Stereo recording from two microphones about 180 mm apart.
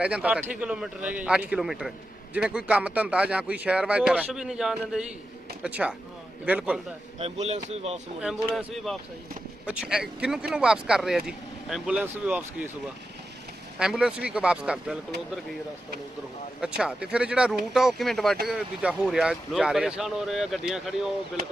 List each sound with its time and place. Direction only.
0.0 s speech: 5° right (ahead or behind)
7.2 s speech: 35° right (ahead or behind)
8.2 s speech: centre (ahead or behind)
13.7 s speech: 5° right (ahead or behind)
16.6 s speech: 5° right (ahead or behind)